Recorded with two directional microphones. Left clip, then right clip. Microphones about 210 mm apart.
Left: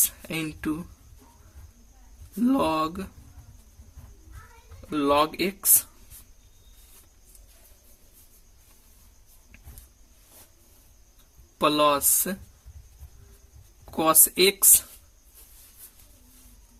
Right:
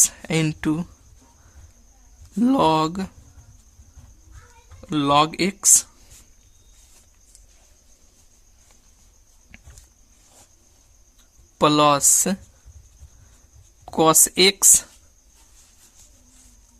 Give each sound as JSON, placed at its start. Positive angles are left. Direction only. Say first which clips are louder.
{"t": 0.0, "sound": "speech", "louder": "right 9 dB", "side_deg": -40}
{"t": 2.4, "sound": "speech", "louder": "right 6 dB", "side_deg": -40}
{"t": 4.9, "sound": "speech", "louder": "right 4 dB", "side_deg": -40}
{"t": 11.5, "sound": "speech", "louder": "right 5 dB", "side_deg": -35}
{"t": 13.9, "sound": "speech", "louder": "right 6 dB", "side_deg": -35}